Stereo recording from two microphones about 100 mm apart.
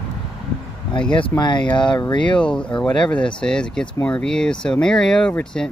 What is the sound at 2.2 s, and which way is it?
Speech, 10° left (ahead or behind).